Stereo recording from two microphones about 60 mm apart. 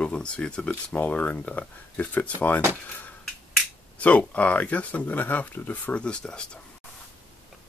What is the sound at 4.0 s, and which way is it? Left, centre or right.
Speech, left.